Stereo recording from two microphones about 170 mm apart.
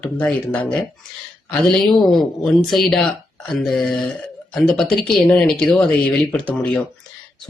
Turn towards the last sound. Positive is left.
turn(degrees=5)  # may be behind; listen again after turning